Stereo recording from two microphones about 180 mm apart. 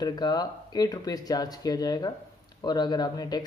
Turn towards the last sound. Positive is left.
turn(degrees=20)  # may be behind; listen again after turning